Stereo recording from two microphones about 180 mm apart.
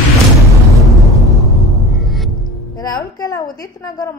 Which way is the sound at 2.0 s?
Centre (ahead or behind).